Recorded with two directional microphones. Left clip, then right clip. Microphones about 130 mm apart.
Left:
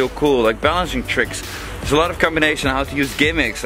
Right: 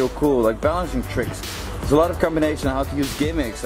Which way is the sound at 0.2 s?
25° left (ahead or behind).